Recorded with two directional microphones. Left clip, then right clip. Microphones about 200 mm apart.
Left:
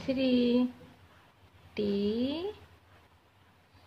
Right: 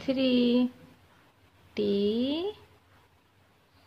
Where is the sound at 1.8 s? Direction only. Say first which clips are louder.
Right 4 dB; 25° right (ahead or behind).